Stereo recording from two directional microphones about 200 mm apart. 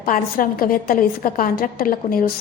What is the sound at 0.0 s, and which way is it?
A woman's voice, 45° left (ahead or behind).